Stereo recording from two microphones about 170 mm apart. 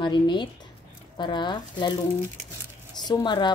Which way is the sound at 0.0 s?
25° left (ahead or behind).